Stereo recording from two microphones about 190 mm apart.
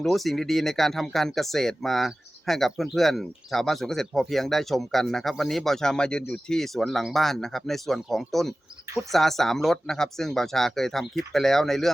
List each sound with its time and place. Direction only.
0.0 s speech: centre (ahead or behind)